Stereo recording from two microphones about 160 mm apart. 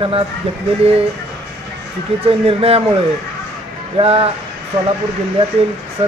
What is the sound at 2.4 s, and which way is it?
Speech, 40° right (ahead or behind).